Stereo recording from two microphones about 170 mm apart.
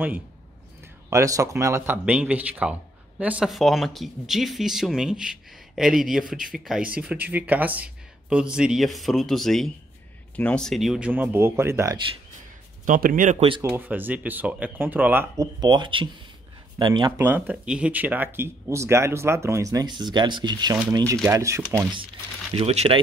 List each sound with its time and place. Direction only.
1.1 s speech: 20° right (ahead or behind)
12.8 s speech: 50° right (ahead or behind)
13.6 s speech: 10° right (ahead or behind)
15.6 s speech: 25° right (ahead or behind)
17.2 s speech: 10° right (ahead or behind)
22.5 s speech: 40° right (ahead or behind)